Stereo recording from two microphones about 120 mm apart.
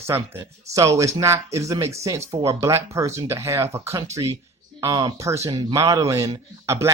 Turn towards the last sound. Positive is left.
turn(degrees=-25)  # may be behind; listen again after turning